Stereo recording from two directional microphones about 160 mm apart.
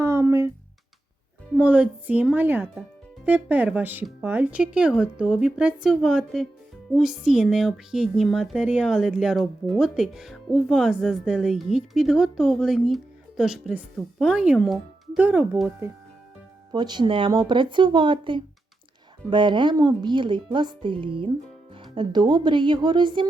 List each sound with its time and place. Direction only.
0.0 s a sound: 15° right (ahead or behind)
1.5 s speech: 5° right (ahead or behind)
16.7 s speech: 30° right (ahead or behind)